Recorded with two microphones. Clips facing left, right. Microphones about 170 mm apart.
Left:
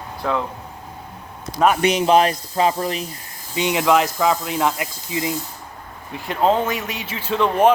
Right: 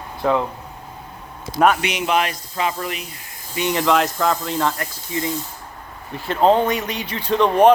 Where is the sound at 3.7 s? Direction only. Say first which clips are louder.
Left 1 dB; 5° left (ahead or behind).